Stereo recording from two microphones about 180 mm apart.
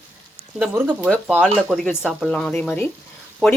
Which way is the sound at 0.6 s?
10° right (ahead or behind).